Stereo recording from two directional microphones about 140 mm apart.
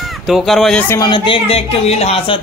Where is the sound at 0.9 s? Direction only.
30° left (ahead or behind).